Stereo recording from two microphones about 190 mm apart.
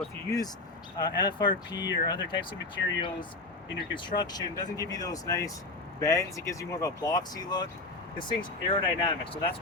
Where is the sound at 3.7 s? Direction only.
25° left (ahead or behind).